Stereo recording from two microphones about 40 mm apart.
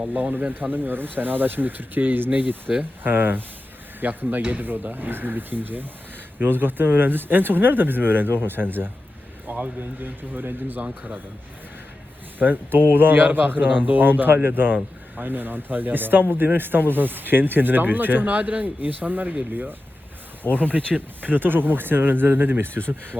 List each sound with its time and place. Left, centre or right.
0.0 s speech: right
9.5 s speech: right
10.8 s a man's voice: right
12.4 s speech: right
20.4 s speech: right